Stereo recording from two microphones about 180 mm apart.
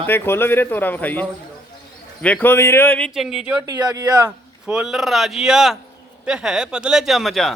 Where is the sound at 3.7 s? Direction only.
20° right (ahead or behind).